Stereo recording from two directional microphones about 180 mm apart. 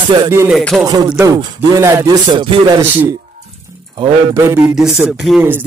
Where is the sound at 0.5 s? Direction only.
Centre (ahead or behind).